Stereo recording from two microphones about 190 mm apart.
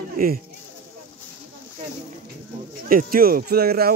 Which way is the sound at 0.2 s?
50° right (ahead or behind).